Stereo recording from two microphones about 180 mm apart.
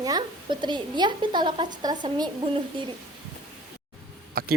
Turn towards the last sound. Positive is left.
turn(degrees=-55)  # may be behind; listen again after turning